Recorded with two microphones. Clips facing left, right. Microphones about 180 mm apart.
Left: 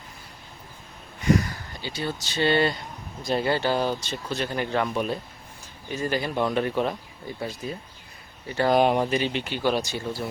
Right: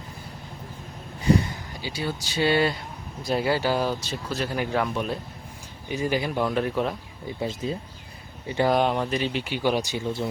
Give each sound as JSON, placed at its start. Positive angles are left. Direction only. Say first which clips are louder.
{"t": 1.2, "sound": "a sound", "louder": "right 1 dB", "side_deg": -30}
{"t": 1.8, "sound": "speech", "louder": "even", "side_deg": -10}
{"t": 5.9, "sound": "speech", "louder": "right 1 dB", "side_deg": -15}
{"t": 7.4, "sound": "speech", "louder": "right 4 dB", "side_deg": -25}
{"t": 8.7, "sound": "speech", "louder": "left 5 dB", "side_deg": 10}
{"t": 9.0, "sound": "speech", "louder": "left 1 dB", "side_deg": 0}